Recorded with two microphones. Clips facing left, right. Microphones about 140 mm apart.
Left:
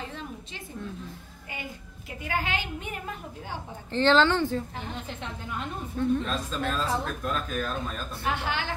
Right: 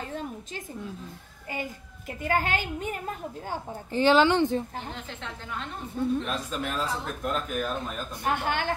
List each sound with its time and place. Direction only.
2.2 s a woman's voice: 45° right (ahead or behind)
3.9 s speech: 10° right (ahead or behind)
5.9 s speech: 10° right (ahead or behind)
8.3 s a woman's voice: 50° right (ahead or behind)